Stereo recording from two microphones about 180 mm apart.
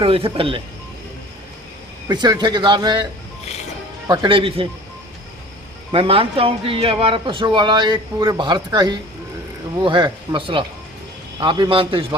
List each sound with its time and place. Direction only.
0.0 s speech: 30° right (ahead or behind)
2.0 s speech: 25° right (ahead or behind)
4.1 s speech: 25° right (ahead or behind)
5.9 s speech: 30° right (ahead or behind)